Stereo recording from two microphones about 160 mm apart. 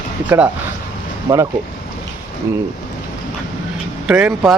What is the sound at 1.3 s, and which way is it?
Speech, 20° right (ahead or behind).